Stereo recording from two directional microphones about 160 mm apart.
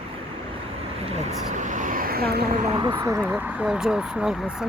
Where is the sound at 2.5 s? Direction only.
40° right (ahead or behind).